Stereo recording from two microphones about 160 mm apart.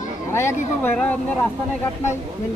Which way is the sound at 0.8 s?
10° left (ahead or behind).